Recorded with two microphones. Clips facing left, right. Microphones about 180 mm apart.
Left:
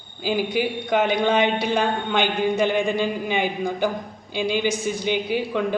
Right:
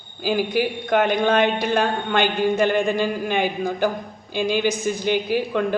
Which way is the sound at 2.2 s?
5° right (ahead or behind).